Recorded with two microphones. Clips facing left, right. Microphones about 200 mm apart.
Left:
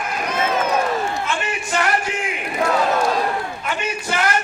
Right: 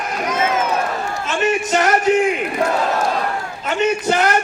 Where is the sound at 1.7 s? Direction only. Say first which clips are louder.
Right 2 dB; 40° right (ahead or behind).